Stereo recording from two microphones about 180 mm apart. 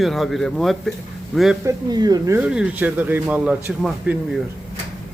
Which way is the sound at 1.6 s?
20° right (ahead or behind).